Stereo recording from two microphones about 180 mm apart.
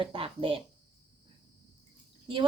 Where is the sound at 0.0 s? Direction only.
30° right (ahead or behind).